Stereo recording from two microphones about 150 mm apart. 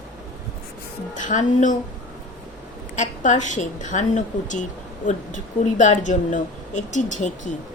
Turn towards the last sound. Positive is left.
turn(degrees=55)  # may be behind; listen again after turning